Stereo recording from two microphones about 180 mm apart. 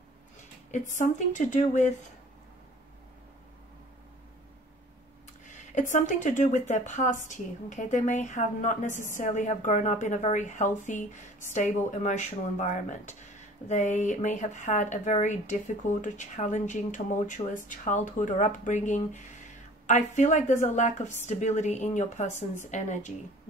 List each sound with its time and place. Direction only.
0.7 s speech: 45° left (ahead or behind)
5.4 s a woman's voice: 45° left (ahead or behind)